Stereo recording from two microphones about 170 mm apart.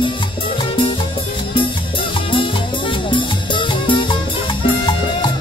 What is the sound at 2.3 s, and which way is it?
Music, 30° left (ahead or behind).